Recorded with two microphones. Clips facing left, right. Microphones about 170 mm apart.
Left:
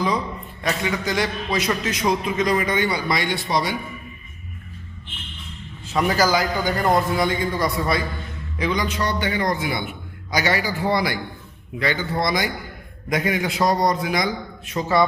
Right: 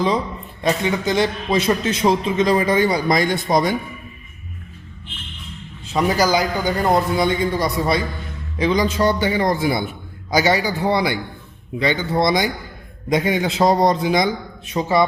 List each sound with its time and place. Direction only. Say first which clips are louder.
0.6 s a man's voice: right 5 dB; 25° right (ahead or behind); by 3.8 s 50° right (ahead or behind)
5.9 s a man's voice: right 2 dB; 20° right (ahead or behind)